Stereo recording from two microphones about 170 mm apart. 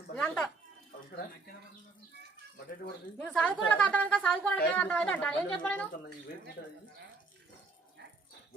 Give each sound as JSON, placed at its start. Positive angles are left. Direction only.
{"t": 0.1, "sound": "a sound", "side_deg": 5}
{"t": 3.2, "sound": "a woman's voice", "side_deg": 5}
{"t": 6.6, "sound": "speech", "side_deg": 80}